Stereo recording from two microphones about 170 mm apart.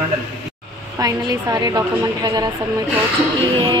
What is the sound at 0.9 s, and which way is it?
A woman's voice, 20° right (ahead or behind).